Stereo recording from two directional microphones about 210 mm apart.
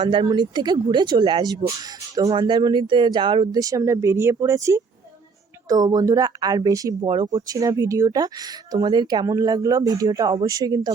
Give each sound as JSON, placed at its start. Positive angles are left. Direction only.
{"t": 0.0, "sound": "speech", "side_deg": -25}